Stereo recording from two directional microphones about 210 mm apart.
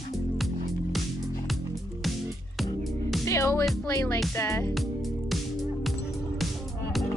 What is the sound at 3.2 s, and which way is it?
Music, 15° left (ahead or behind).